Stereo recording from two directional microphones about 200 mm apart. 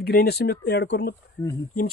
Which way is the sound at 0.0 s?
50° left (ahead or behind).